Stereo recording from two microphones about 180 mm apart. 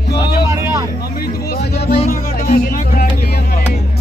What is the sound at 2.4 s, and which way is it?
Music, 55° left (ahead or behind).